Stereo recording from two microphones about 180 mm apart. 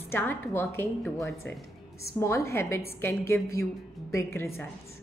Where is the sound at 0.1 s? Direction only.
15° left (ahead or behind).